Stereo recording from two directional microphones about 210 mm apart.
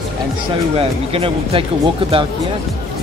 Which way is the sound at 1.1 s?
25° right (ahead or behind).